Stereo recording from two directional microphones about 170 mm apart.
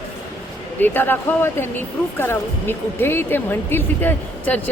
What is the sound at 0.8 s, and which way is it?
Speech, 10° left (ahead or behind).